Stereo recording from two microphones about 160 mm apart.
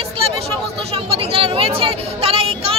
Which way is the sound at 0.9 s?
35° right (ahead or behind).